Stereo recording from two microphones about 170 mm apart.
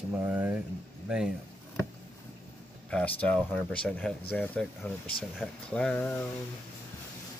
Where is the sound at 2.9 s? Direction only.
5° left (ahead or behind).